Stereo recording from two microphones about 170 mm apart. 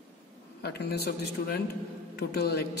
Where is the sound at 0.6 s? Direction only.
70° left (ahead or behind).